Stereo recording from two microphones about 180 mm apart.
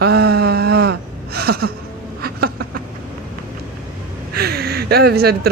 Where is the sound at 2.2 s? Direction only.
60° right (ahead or behind).